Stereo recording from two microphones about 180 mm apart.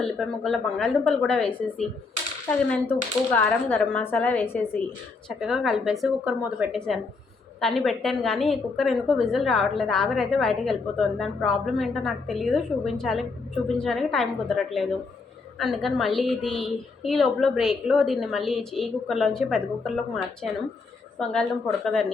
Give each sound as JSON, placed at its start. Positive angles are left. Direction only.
{"t": 0.0, "sound": "a woman's voice", "side_deg": 0}
{"t": 5.4, "sound": "a woman's voice", "side_deg": 0}